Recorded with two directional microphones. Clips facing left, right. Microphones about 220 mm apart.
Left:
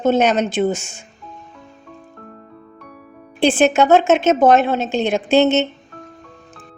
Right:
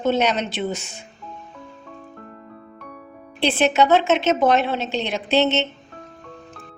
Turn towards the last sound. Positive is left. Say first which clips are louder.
# left 5 dB
turn(degrees=45)  # may be behind; listen again after turning